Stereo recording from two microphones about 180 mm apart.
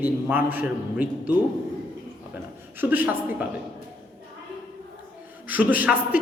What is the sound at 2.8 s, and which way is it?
Speech, 10° right (ahead or behind).